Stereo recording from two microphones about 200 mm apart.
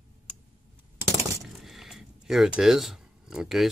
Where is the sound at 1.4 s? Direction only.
Centre (ahead or behind).